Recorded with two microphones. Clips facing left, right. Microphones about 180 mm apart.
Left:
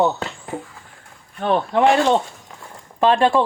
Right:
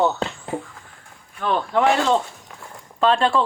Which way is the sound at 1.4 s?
25° left (ahead or behind).